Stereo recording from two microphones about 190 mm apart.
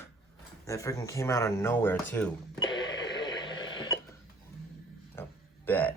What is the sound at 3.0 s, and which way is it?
Radio, 20° left (ahead or behind).